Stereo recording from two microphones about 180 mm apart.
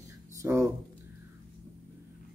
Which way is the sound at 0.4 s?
15° right (ahead or behind).